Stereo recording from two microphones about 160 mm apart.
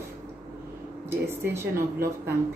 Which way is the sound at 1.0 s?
15° right (ahead or behind).